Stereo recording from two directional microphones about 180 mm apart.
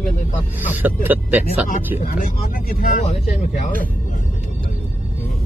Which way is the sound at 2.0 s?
50° left (ahead or behind).